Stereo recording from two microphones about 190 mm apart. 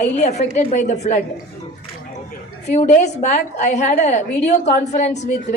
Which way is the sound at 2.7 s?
40° left (ahead or behind).